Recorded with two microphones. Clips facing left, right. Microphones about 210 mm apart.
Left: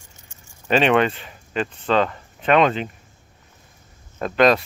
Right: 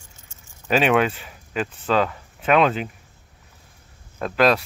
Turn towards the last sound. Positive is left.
turn(degrees=0)  # may be behind; listen again after turning